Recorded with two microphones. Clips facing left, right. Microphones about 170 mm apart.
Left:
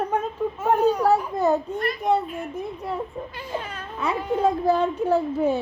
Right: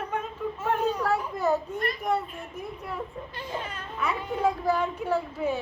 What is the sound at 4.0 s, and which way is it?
A child's voice, 30° left (ahead or behind).